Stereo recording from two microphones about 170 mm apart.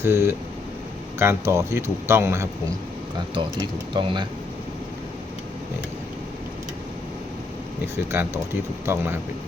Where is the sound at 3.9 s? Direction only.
30° right (ahead or behind).